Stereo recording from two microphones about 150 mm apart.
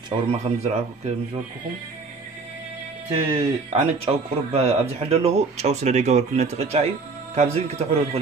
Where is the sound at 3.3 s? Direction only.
40° right (ahead or behind).